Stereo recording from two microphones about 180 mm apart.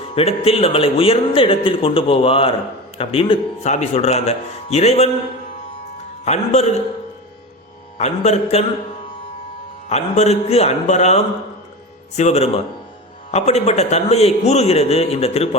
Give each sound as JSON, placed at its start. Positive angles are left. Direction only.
{"t": 0.1, "sound": "a man's voice", "side_deg": 35}
{"t": 6.2, "sound": "a man's voice", "side_deg": 40}
{"t": 7.9, "sound": "a man's voice", "side_deg": 40}
{"t": 9.9, "sound": "a man's voice", "side_deg": 35}